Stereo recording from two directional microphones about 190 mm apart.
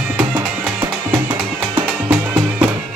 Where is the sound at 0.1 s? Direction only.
10° right (ahead or behind).